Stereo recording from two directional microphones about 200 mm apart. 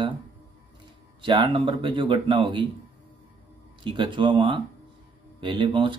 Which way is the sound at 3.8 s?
25° right (ahead or behind).